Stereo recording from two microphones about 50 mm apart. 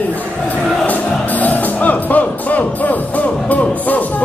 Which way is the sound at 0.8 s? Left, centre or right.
Left.